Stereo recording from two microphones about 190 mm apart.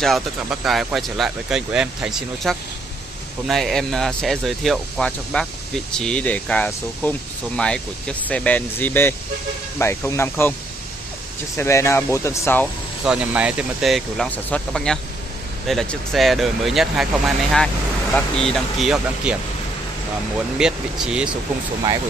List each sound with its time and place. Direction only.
0.0 s speech: centre (ahead or behind)
11.5 s speech: 15° left (ahead or behind)
13.0 s speech: 5° right (ahead or behind)
18.1 s speech: 5° left (ahead or behind)
20.5 s speech: 5° right (ahead or behind)